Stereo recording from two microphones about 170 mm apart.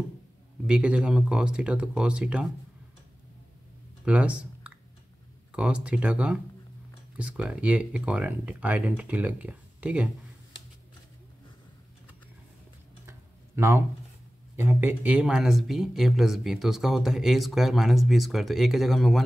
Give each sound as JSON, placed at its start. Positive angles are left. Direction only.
{"t": 0.7, "sound": "speech", "side_deg": -5}
{"t": 4.0, "sound": "a sound", "side_deg": -10}
{"t": 5.5, "sound": "speech", "side_deg": -5}
{"t": 13.6, "sound": "speech", "side_deg": -15}